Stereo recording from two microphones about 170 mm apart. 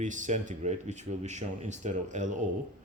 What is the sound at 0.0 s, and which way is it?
Speech, 45° right (ahead or behind).